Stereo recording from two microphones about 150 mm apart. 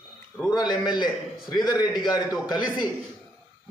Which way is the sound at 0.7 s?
30° left (ahead or behind).